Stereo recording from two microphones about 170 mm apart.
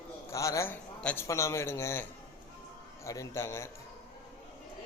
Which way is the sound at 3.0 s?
15° left (ahead or behind).